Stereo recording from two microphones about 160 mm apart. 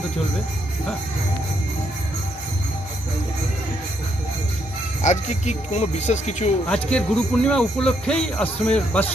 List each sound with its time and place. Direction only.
5.0 s speech: 45° left (ahead or behind)
6.7 s speech: 5° left (ahead or behind)